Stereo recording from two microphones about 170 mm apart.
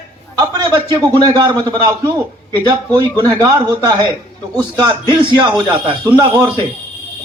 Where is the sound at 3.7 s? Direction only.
20° right (ahead or behind).